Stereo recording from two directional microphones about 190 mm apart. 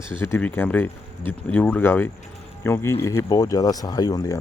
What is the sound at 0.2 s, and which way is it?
Speech, 10° left (ahead or behind).